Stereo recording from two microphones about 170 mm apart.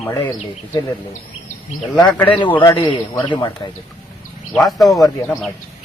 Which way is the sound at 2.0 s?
15° left (ahead or behind).